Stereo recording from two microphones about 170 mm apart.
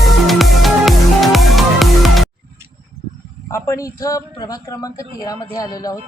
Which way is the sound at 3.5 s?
15° left (ahead or behind).